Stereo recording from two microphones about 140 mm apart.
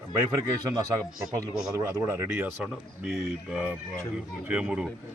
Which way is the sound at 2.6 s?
Centre (ahead or behind).